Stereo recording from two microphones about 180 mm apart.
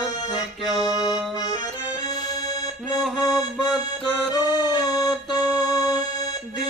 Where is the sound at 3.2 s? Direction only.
20° left (ahead or behind).